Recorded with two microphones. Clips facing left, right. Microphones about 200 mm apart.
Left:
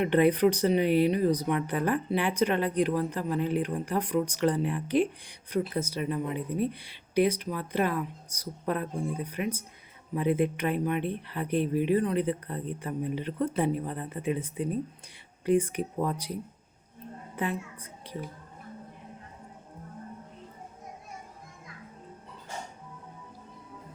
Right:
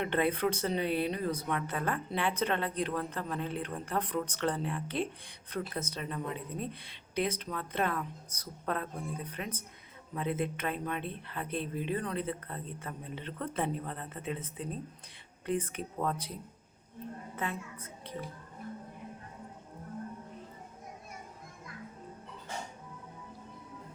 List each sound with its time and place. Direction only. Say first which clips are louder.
0.0 s a woman's voice: left 8 dB; 15° left (ahead or behind)
17.3 s a woman's voice: left 6 dB; 15° left (ahead or behind)